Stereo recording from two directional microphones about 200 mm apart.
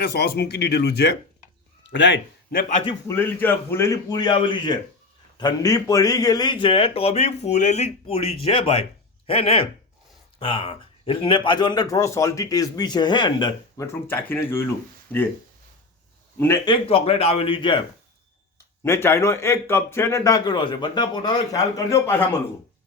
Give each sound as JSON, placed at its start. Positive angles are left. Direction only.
{"t": 0.0, "sound": "a man's voice", "side_deg": 55}
{"t": 3.1, "sound": "a man's voice", "side_deg": 10}
{"t": 16.6, "sound": "a man's voice", "side_deg": 25}
{"t": 18.8, "sound": "a man's voice", "side_deg": 10}